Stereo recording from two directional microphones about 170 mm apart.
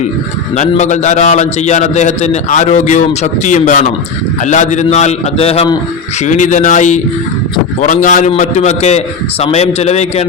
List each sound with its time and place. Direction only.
0.5 s a man's voice: 45° left (ahead or behind)
6.2 s a man's voice: 45° left (ahead or behind)